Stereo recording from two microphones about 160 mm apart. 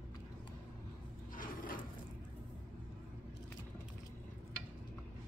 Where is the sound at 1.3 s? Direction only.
60° left (ahead or behind).